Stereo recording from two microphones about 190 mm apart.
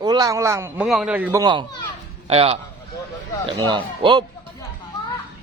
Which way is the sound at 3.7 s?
25° right (ahead or behind).